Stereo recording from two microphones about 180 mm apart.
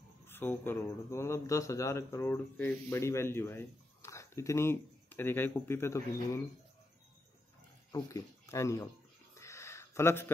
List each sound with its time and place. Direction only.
0.3 s speech: 10° left (ahead or behind)
7.9 s speech: 15° left (ahead or behind)
9.3 s a sound: 15° left (ahead or behind)